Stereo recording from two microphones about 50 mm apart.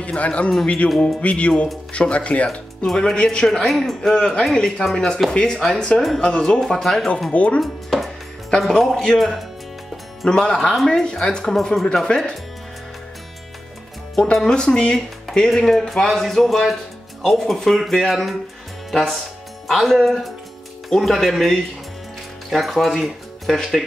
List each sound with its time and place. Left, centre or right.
0.0 s speech: left
0.8 s speech: centre
1.2 s speech: left
2.9 s speech: centre
3.2 s speech: centre
4.2 s speech: centre
7.3 s speech: left
7.6 s speech: centre
14.2 s speech: centre